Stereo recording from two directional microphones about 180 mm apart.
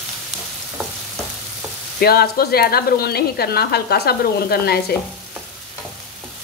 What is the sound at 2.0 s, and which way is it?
Speech, 60° left (ahead or behind).